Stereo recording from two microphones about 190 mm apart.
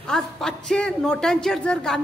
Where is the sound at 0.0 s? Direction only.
5° left (ahead or behind).